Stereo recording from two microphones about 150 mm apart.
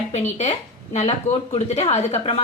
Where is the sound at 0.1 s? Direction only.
50° left (ahead or behind).